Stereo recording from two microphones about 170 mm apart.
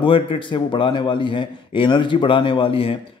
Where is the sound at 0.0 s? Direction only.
30° left (ahead or behind).